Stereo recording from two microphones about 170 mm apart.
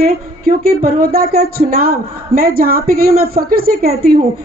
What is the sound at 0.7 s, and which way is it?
A woman's voice, 60° right (ahead or behind).